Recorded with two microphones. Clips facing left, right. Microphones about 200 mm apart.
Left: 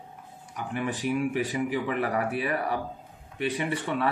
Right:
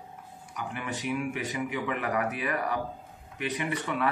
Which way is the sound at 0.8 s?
35° left (ahead or behind).